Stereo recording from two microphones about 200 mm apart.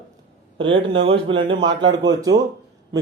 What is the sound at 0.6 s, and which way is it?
Speech, 25° right (ahead or behind).